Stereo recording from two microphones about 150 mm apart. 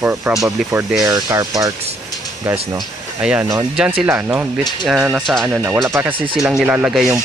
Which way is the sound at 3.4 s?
20° right (ahead or behind).